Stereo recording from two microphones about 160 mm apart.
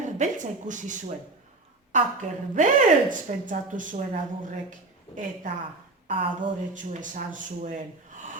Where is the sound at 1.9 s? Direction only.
50° right (ahead or behind).